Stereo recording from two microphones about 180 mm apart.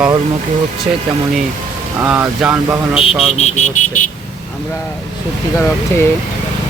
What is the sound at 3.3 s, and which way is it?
Speech, 40° left (ahead or behind).